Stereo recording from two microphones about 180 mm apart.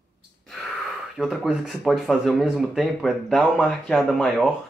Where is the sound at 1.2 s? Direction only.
5° right (ahead or behind).